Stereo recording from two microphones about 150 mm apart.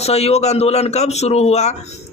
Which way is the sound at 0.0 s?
45° left (ahead or behind).